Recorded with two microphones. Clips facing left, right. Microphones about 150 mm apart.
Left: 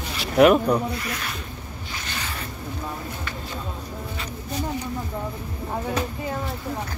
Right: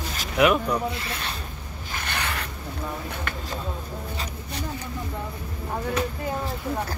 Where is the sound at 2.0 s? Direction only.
60° right (ahead or behind).